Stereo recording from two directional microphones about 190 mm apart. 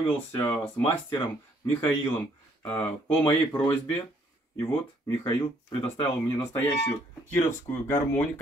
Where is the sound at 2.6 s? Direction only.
10° left (ahead or behind).